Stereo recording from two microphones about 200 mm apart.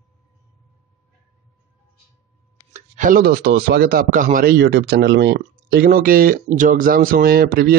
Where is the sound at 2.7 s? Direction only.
40° right (ahead or behind).